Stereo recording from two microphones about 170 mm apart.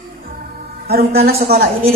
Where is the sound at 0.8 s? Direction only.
65° right (ahead or behind).